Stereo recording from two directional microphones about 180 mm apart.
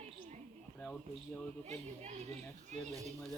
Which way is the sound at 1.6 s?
40° right (ahead or behind).